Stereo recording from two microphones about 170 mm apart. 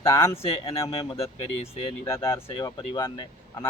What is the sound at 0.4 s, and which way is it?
Speech, 30° left (ahead or behind).